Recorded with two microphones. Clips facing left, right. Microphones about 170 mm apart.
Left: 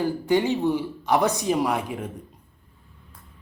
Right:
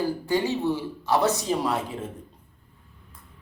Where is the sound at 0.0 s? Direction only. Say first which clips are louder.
Left 3 dB; 20° left (ahead or behind).